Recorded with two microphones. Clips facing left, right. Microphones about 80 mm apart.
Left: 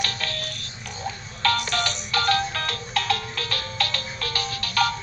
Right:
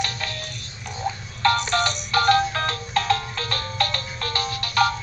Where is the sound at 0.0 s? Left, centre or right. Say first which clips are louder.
Right 1 dB; centre.